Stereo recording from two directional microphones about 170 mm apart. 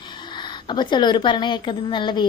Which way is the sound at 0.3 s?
25° left (ahead or behind).